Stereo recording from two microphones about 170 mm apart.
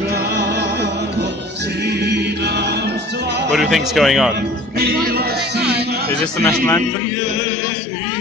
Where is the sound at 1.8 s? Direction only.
75° right (ahead or behind).